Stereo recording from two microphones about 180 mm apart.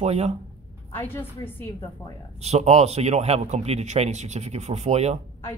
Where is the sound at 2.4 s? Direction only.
35° right (ahead or behind).